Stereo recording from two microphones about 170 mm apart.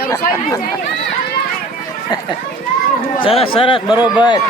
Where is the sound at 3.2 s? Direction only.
35° left (ahead or behind).